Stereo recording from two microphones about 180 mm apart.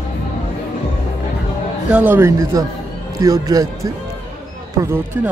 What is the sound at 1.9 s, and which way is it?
Speech, 10° right (ahead or behind).